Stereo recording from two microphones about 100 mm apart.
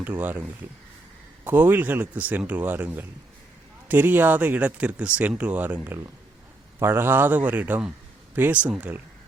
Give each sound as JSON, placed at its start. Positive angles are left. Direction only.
{"t": 0.0, "sound": "a man's voice", "side_deg": -20}